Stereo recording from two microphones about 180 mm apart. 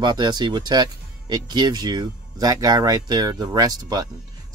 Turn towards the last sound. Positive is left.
turn(degrees=-20)  # may be behind; listen again after turning